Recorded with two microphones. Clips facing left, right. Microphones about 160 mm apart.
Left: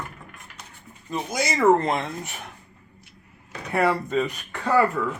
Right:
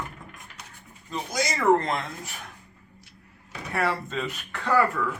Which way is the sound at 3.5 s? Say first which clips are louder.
Left 5 dB; 20° left (ahead or behind).